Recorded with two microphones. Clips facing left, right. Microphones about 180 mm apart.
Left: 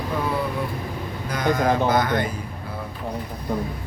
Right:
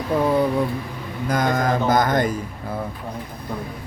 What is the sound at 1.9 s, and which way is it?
Speech, 45° right (ahead or behind).